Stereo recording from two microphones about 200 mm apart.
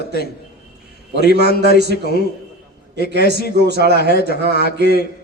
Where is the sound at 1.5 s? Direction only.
50° left (ahead or behind).